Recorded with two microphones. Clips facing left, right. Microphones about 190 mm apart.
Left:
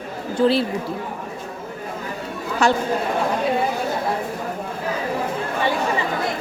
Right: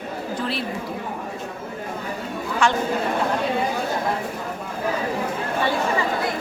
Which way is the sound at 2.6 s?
40° left (ahead or behind).